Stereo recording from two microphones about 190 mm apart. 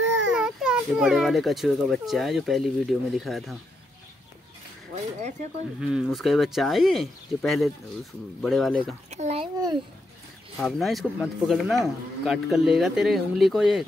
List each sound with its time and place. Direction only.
0.0 s baby cry: 80° right
0.3 s speech: 5° right (ahead or behind)
5.8 s speech: 5° right (ahead or behind)
9.1 s a child's voice: 35° right (ahead or behind)
10.6 s speech: centre (ahead or behind)